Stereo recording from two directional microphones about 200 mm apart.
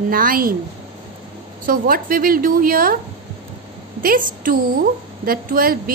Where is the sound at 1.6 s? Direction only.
45° right (ahead or behind).